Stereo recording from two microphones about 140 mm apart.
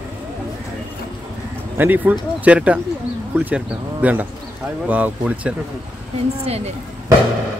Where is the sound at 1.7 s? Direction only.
15° right (ahead or behind).